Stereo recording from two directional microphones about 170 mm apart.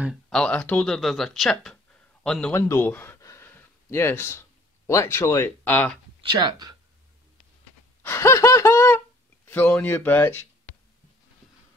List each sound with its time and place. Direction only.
0.0 s a man's voice: centre (ahead or behind)
6.2 s speech: 25° right (ahead or behind)
8.0 s laughter: 15° left (ahead or behind)
9.5 s speech: 10° left (ahead or behind)